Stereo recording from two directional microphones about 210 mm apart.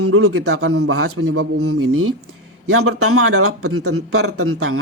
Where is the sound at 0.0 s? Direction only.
90° right.